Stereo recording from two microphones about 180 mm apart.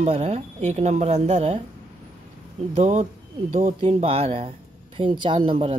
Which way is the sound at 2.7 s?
40° right (ahead or behind).